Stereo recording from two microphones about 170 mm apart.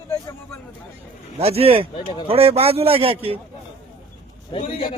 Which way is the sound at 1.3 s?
35° right (ahead or behind).